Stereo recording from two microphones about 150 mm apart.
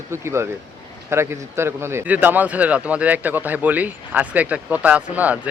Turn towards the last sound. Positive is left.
turn(degrees=-10)  # may be behind; listen again after turning